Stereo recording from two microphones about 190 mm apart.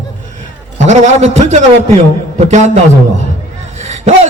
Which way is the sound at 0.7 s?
35° right (ahead or behind).